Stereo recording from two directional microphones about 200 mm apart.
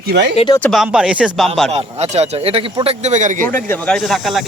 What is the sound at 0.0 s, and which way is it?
Speech, 55° right (ahead or behind).